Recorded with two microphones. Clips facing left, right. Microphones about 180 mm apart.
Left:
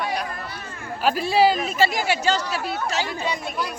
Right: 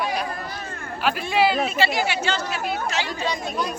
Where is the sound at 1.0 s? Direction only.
35° left (ahead or behind).